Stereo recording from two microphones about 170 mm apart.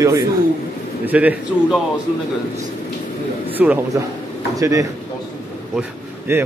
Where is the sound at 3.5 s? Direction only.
10° right (ahead or behind).